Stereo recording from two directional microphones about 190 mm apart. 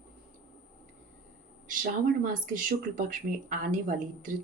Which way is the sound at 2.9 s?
45° right (ahead or behind).